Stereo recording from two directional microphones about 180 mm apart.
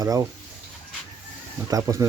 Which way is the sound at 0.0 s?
20° right (ahead or behind).